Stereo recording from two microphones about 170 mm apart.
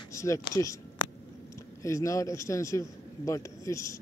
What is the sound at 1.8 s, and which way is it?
A man's voice, 20° left (ahead or behind).